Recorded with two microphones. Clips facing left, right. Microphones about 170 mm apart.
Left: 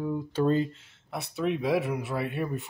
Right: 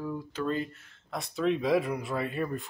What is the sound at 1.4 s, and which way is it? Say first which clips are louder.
Speech: right 1 dB; 10° left (ahead or behind).